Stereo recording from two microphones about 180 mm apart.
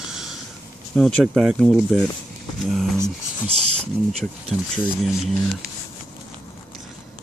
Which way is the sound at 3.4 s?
35° right (ahead or behind).